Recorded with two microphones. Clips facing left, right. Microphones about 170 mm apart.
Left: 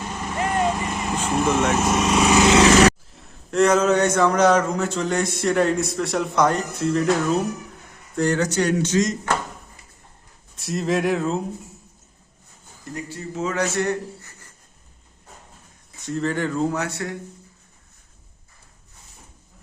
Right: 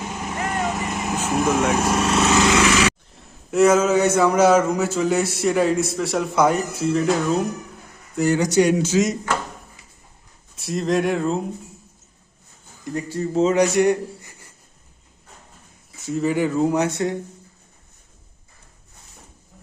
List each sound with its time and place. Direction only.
0.0 s vehicle: 10° right (ahead or behind)
0.3 s vehicle: 15° left (ahead or behind)
0.7 s vehicle: 10° right (ahead or behind)
1.0 s speech: 5° right (ahead or behind)
1.9 s speech: 5° left (ahead or behind)
2.6 s roar: 35° left (ahead or behind)
3.2 s a man's voice: 5° right (ahead or behind)
10.5 s a man's voice: centre (ahead or behind)
12.9 s speech: 30° right (ahead or behind)
13.5 s a man's voice: 15° right (ahead or behind)
16.0 s speech: 5° right (ahead or behind)
16.7 s speech: 20° right (ahead or behind)